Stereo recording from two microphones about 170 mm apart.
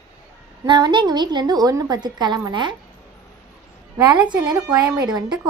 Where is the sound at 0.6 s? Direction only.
25° right (ahead or behind).